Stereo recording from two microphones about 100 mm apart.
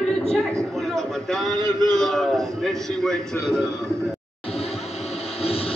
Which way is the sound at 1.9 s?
5° left (ahead or behind).